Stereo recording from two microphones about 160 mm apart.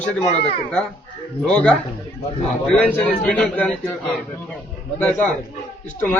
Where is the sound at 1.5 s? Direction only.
5° left (ahead or behind).